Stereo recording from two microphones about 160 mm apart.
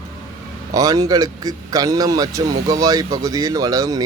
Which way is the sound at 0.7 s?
20° right (ahead or behind).